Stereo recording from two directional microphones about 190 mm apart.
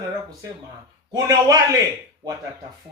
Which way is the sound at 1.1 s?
20° right (ahead or behind).